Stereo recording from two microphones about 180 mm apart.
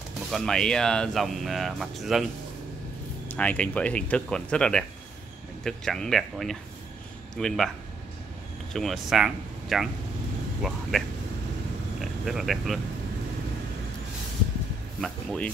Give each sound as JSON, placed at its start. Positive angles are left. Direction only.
{"t": 0.3, "sound": "speech", "side_deg": 0}
{"t": 3.3, "sound": "speech", "side_deg": 10}
{"t": 8.7, "sound": "speech", "side_deg": 0}
{"t": 15.0, "sound": "speech", "side_deg": 5}